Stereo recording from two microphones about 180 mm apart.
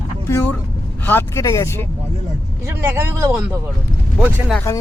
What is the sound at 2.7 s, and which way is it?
Speech, 15° right (ahead or behind).